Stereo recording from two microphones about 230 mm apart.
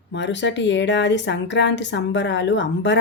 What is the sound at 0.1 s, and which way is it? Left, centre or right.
A woman's voice, left.